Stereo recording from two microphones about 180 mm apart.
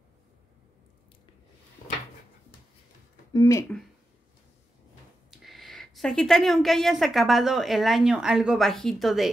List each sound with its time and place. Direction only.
3.3 s speech: 15° left (ahead or behind)
5.4 s a woman's voice: centre (ahead or behind)